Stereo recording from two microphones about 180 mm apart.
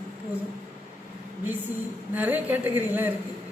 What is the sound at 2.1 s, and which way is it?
A man's voice, 10° right (ahead or behind).